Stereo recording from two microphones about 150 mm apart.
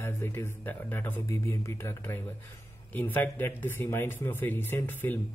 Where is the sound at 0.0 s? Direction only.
15° left (ahead or behind).